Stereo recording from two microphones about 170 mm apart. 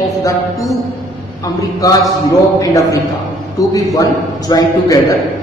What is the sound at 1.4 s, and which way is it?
A man's voice, 20° left (ahead or behind).